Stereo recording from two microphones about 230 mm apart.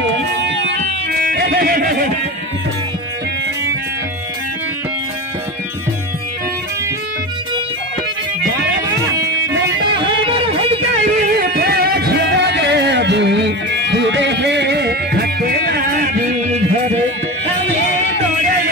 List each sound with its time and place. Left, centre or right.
0.2 s music: right
9.9 s a sound: right
11.1 s music: right